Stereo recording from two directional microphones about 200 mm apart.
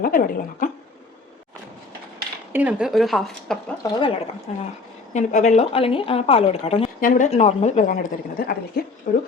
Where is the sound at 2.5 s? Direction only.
5° right (ahead or behind).